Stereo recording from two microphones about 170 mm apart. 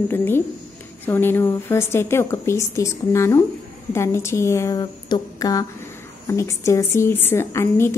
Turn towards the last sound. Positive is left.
turn(degrees=15)  # may be behind; listen again after turning